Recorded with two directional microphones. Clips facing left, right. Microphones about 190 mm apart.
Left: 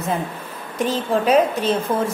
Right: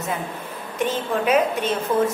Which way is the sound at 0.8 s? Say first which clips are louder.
Left 3 dB; 35° left (ahead or behind).